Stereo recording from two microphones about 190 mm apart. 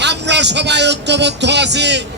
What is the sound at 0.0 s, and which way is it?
A man's voice, 65° right (ahead or behind).